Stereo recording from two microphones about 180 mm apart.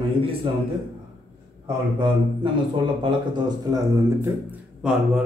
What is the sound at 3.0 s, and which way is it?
Speech, 25° right (ahead or behind).